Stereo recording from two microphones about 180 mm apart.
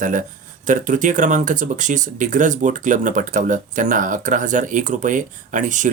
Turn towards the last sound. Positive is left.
turn(degrees=-45)  # may be behind; listen again after turning